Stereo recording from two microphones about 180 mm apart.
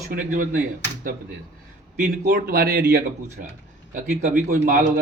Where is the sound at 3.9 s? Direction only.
45° right (ahead or behind).